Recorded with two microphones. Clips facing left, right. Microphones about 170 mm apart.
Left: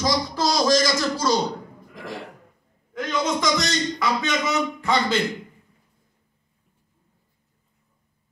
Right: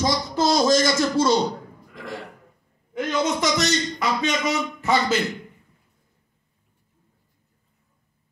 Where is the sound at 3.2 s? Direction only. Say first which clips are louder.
Right 1 dB; 25° right (ahead or behind).